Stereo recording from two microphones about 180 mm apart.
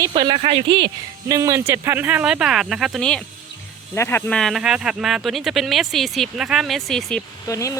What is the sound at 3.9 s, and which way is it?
Speech, 15° left (ahead or behind).